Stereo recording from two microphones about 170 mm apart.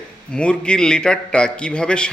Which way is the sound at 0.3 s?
5° left (ahead or behind).